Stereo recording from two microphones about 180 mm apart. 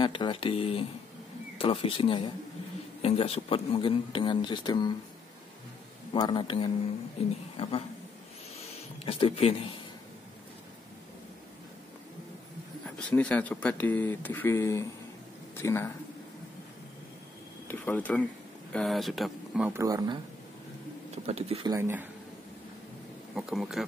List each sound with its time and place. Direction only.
0.0 s speech: 25° left (ahead or behind)
6.1 s speech: 25° left (ahead or behind)
9.0 s speech: 35° left (ahead or behind)
12.8 s speech: 5° left (ahead or behind)
17.6 s speech: 10° left (ahead or behind)
19.7 s speech: 20° right (ahead or behind)
21.3 s speech: 35° right (ahead or behind)
21.6 s speech: 15° right (ahead or behind)
23.3 s speech: centre (ahead or behind)